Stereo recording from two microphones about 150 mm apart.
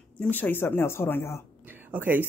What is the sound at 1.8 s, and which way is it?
Speech, 15° right (ahead or behind).